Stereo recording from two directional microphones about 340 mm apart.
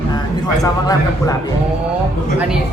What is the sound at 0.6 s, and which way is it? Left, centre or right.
Speech, centre.